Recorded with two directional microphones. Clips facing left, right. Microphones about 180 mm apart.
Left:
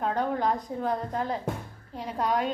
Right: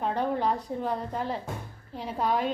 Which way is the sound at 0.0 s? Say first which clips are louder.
Even; 5° right (ahead or behind).